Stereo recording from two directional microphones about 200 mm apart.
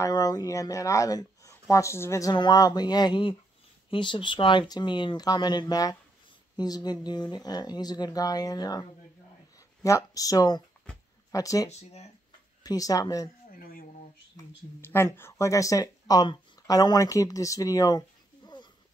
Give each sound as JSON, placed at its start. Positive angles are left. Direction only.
{"t": 0.0, "sound": "speech", "side_deg": 20}
{"t": 9.8, "sound": "speech", "side_deg": 15}
{"t": 11.7, "sound": "speech", "side_deg": 35}
{"t": 12.6, "sound": "speech", "side_deg": 15}
{"t": 13.5, "sound": "a sound", "side_deg": 45}
{"t": 14.3, "sound": "speech", "side_deg": 10}